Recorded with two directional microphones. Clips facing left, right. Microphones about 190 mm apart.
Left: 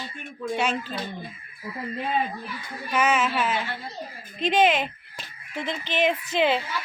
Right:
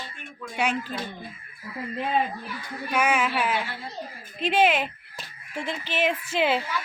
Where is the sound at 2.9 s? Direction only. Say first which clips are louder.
Left 1 dB; 10° right (ahead or behind).